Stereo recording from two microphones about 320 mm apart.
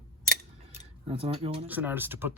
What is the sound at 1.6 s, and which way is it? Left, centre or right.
Speech, centre.